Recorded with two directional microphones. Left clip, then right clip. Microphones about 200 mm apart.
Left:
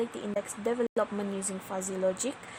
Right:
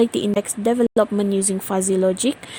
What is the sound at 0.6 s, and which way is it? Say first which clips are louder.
Speech: right 11 dB; 30° right (ahead or behind).